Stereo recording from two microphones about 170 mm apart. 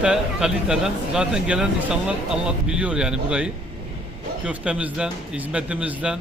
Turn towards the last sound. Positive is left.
turn(degrees=-10)  # may be behind; listen again after turning